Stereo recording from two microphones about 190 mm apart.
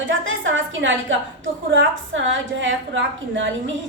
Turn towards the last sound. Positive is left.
turn(degrees=-80)